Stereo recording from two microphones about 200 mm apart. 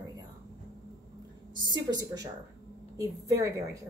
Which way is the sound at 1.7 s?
20° right (ahead or behind).